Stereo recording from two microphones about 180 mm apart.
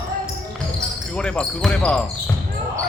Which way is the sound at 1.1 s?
5° left (ahead or behind).